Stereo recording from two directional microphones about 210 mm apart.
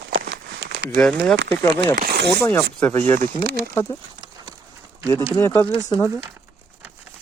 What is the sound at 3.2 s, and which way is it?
Speech, 50° right (ahead or behind).